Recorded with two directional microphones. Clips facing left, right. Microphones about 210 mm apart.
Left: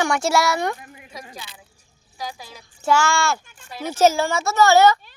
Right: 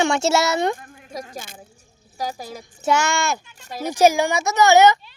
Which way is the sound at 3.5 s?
40° right (ahead or behind).